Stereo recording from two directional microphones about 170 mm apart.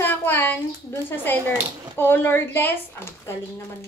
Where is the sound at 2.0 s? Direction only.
15° left (ahead or behind).